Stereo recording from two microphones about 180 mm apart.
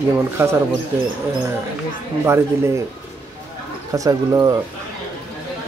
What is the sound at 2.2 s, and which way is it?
Speech, 15° right (ahead or behind).